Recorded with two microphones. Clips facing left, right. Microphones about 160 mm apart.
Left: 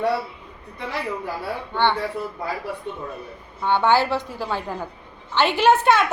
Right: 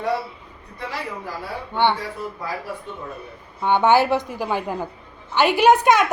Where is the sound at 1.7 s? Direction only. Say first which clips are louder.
Right 2 dB; 15° right (ahead or behind).